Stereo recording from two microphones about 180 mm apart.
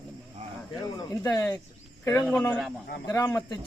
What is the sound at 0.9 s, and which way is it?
Speech, 15° left (ahead or behind).